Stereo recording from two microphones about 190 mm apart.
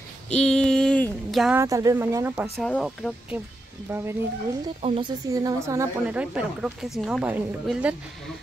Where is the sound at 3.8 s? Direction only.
10° right (ahead or behind).